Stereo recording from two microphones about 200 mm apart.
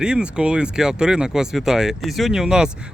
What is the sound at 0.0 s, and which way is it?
Speech, 5° right (ahead or behind).